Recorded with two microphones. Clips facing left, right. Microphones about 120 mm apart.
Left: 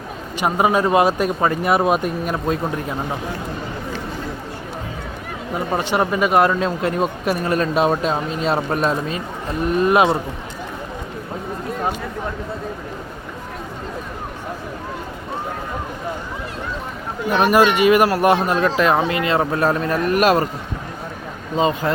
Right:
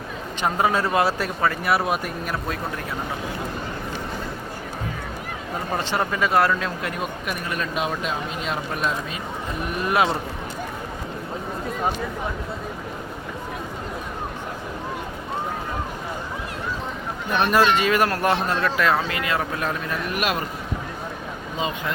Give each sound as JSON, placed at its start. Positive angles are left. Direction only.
{"t": 0.3, "sound": "speech", "side_deg": 15}
{"t": 5.7, "sound": "speech", "side_deg": 15}
{"t": 9.8, "sound": "speech", "side_deg": 20}
{"t": 17.2, "sound": "speech", "side_deg": 15}
{"t": 21.8, "sound": "speech", "side_deg": 40}